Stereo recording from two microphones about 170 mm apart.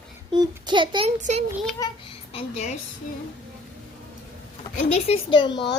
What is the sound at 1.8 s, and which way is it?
Speech, 20° left (ahead or behind).